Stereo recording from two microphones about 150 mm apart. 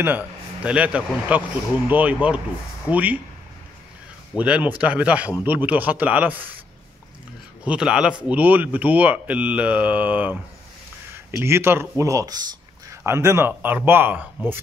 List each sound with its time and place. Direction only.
0.0 s a man's voice: 10° right (ahead or behind)
4.4 s speech: 10° right (ahead or behind)
7.6 s speech: 5° right (ahead or behind)